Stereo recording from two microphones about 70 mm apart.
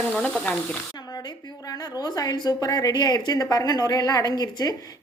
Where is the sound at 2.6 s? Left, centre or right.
Left.